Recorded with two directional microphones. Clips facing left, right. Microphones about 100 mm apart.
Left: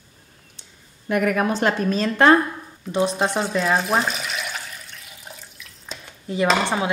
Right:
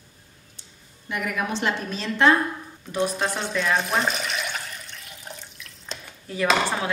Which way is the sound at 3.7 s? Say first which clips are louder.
Left 3 dB; centre (ahead or behind).